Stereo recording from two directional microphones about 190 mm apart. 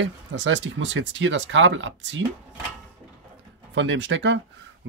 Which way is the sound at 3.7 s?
75° right (ahead or behind).